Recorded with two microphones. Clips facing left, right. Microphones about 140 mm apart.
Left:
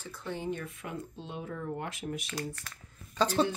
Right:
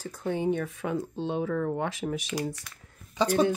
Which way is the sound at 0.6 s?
85° right.